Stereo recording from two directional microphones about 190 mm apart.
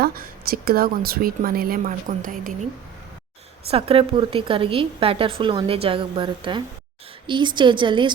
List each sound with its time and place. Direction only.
0.0 s a woman's voice: 50° right (ahead or behind)
3.7 s a woman's voice: 30° right (ahead or behind)